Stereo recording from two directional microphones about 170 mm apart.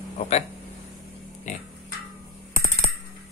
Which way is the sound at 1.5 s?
45° left (ahead or behind).